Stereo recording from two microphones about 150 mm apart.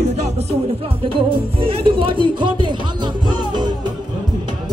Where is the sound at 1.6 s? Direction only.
35° right (ahead or behind).